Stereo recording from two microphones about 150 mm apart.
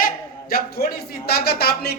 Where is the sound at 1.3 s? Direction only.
90° left.